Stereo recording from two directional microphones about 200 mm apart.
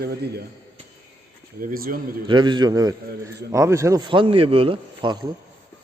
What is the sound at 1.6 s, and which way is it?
Speech, 45° right (ahead or behind).